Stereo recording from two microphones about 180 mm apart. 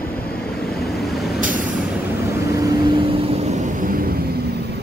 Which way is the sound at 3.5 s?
50° right (ahead or behind).